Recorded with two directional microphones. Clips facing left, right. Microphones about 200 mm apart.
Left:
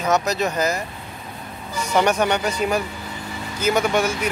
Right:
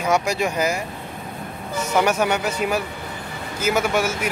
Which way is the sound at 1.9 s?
5° right (ahead or behind).